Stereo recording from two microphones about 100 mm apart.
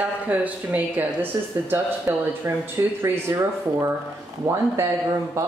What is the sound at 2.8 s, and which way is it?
Speech, 35° right (ahead or behind).